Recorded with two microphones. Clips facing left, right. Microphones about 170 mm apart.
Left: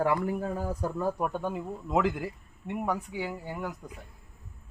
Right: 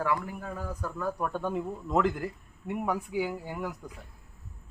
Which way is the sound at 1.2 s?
15° left (ahead or behind).